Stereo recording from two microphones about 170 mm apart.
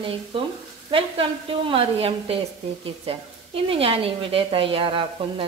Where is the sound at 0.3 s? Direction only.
30° right (ahead or behind).